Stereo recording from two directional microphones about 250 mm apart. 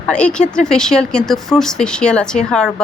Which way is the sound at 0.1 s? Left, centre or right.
Centre.